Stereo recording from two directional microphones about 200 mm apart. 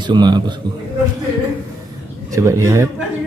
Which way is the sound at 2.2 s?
15° right (ahead or behind).